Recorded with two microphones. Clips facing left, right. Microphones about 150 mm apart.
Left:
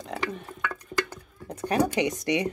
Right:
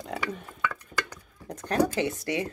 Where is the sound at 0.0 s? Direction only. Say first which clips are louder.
Left 1 dB; centre (ahead or behind).